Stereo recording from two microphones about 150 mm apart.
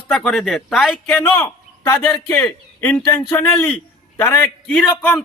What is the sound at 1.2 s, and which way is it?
A man's voice, 15° left (ahead or behind).